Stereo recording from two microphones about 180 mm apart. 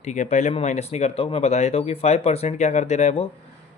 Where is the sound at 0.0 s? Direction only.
40° left (ahead or behind).